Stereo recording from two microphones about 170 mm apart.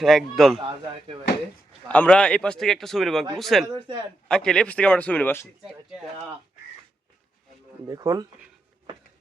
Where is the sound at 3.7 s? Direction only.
25° right (ahead or behind).